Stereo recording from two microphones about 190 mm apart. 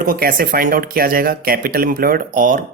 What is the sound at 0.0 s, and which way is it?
Speech, 50° right (ahead or behind).